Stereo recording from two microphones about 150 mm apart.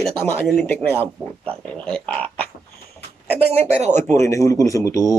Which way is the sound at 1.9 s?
5° left (ahead or behind).